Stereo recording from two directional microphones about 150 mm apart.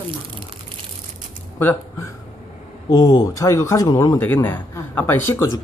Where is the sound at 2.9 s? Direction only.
25° left (ahead or behind).